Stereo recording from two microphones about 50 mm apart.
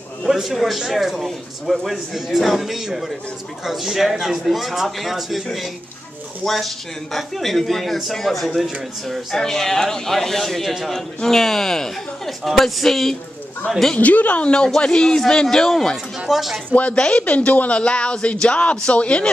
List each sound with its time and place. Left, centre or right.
0.2 s speech: centre
13.9 s speech: left
14.8 s speech: centre
16.3 s speech: centre
16.9 s speech: centre
17.5 s speech: left